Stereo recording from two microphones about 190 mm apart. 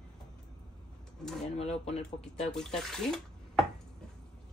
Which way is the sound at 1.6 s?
35° left (ahead or behind).